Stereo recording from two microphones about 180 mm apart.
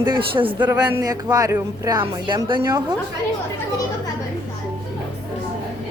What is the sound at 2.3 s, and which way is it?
Speech, 25° right (ahead or behind).